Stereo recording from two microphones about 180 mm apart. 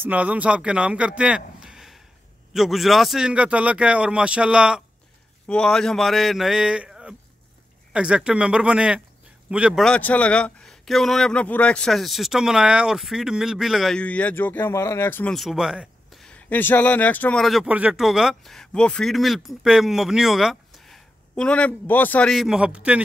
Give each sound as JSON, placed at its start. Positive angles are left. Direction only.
{"t": 0.0, "sound": "speech", "side_deg": -10}
{"t": 15.3, "sound": "speech", "side_deg": 0}